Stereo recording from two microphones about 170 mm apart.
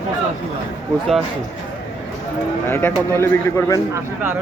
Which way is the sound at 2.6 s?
15° left (ahead or behind).